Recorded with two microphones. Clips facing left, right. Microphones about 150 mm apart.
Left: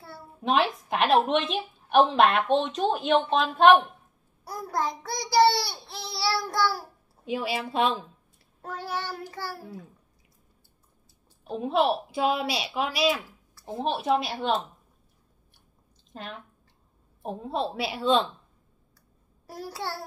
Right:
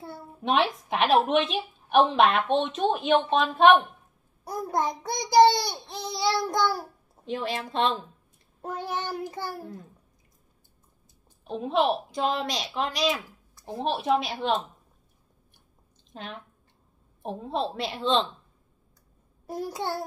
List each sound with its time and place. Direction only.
0.4 s a woman's voice: centre (ahead or behind)
4.5 s a child's voice: 20° right (ahead or behind)
7.2 s a woman's voice: 5° left (ahead or behind)
8.6 s a child's voice: 20° right (ahead or behind)
11.4 s a woman's voice: centre (ahead or behind)
16.1 s a woman's voice: centre (ahead or behind)
19.4 s a child's voice: 20° right (ahead or behind)